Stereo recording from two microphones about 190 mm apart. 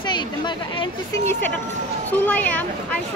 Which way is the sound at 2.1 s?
10° left (ahead or behind).